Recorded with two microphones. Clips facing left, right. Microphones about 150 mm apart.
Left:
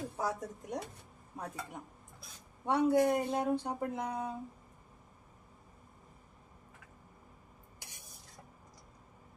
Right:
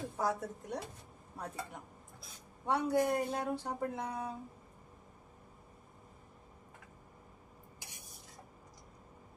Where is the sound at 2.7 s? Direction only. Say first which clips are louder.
Left 3 dB; 25° left (ahead or behind).